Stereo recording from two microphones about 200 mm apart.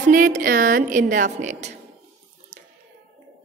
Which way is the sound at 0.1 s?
40° right (ahead or behind).